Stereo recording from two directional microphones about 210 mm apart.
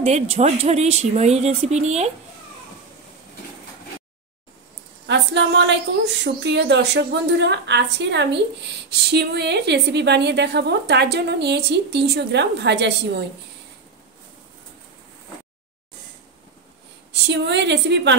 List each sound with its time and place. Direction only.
0.0 s speech: 30° right (ahead or behind)
5.0 s a woman's voice: 55° right (ahead or behind)
17.1 s a woman's voice: 55° right (ahead or behind)